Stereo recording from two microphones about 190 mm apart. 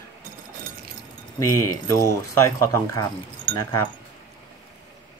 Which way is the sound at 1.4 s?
15° left (ahead or behind).